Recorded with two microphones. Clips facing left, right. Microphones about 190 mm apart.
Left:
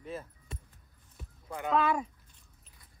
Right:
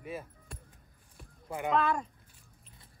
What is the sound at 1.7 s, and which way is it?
Speech, 5° left (ahead or behind).